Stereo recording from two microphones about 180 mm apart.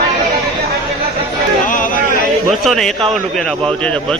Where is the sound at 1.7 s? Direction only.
50° left (ahead or behind).